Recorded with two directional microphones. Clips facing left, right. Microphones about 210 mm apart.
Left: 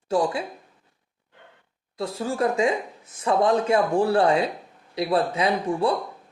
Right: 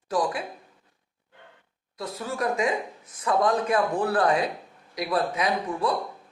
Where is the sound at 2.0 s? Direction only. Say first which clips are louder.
Left 5 dB; 30° left (ahead or behind).